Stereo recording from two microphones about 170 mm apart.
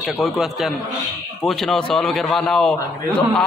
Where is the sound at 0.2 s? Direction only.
Centre (ahead or behind).